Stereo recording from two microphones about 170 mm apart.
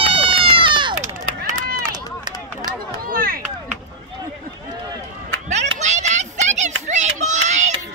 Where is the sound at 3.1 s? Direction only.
60° right (ahead or behind).